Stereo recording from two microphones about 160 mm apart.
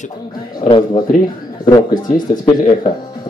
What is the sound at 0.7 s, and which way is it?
Speech, 30° left (ahead or behind).